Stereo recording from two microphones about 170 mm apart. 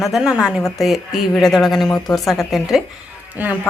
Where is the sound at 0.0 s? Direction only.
5° right (ahead or behind).